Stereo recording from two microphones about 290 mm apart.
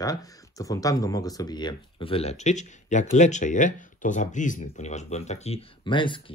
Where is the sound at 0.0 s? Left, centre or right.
Centre.